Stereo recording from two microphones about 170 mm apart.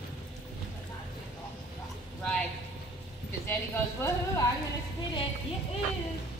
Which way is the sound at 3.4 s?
15° left (ahead or behind).